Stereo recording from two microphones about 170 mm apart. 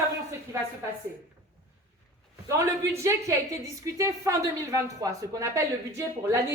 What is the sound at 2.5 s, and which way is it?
A woman's voice, 15° right (ahead or behind).